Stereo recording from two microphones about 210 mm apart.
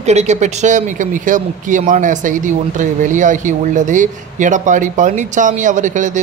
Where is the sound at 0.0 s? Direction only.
30° right (ahead or behind).